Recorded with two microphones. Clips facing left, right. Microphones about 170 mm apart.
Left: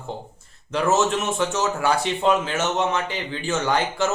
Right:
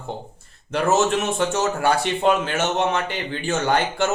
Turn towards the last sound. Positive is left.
turn(degrees=-55)  # may be behind; listen again after turning